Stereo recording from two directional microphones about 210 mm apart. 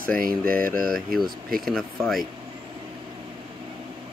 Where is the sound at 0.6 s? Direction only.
40° right (ahead or behind).